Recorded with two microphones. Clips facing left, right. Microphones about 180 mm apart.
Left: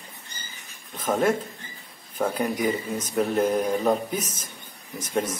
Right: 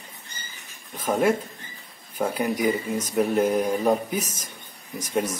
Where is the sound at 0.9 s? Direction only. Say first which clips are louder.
Right 1 dB; 10° right (ahead or behind).